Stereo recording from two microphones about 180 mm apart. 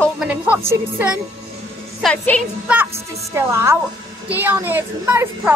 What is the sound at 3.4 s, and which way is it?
Speech, 15° right (ahead or behind).